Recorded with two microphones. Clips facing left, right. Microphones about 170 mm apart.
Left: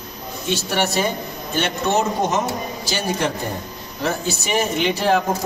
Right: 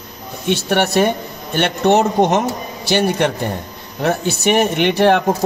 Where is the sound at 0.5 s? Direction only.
60° right (ahead or behind).